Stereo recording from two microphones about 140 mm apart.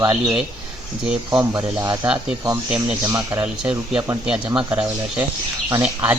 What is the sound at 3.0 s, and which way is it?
Speech, 20° right (ahead or behind).